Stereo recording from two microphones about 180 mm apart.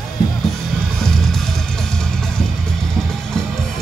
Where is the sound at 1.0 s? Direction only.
Centre (ahead or behind).